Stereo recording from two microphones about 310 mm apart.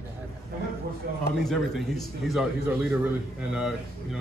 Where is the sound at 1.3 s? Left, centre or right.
Centre.